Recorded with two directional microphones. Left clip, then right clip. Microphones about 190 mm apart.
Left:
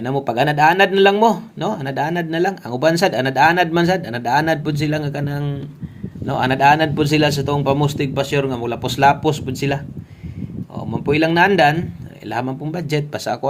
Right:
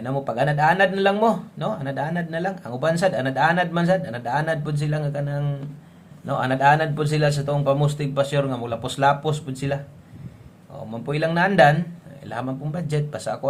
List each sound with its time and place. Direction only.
0.0 s a man's voice: 30° left (ahead or behind)
11.0 s a man's voice: 30° left (ahead or behind)